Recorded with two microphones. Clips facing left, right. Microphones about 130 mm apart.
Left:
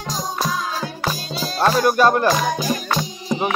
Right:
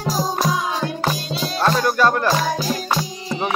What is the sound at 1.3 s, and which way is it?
Speech, 5° left (ahead or behind).